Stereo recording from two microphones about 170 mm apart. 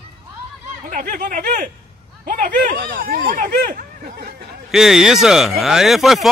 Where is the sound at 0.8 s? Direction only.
50° right (ahead or behind).